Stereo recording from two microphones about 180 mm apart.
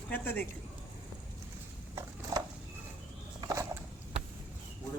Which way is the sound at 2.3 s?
20° right (ahead or behind).